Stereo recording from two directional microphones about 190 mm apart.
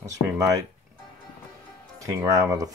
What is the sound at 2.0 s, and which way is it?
Speech, 15° right (ahead or behind).